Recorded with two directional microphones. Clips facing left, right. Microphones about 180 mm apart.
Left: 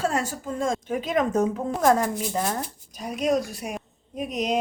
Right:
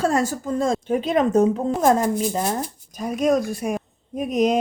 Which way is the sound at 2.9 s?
50° right (ahead or behind).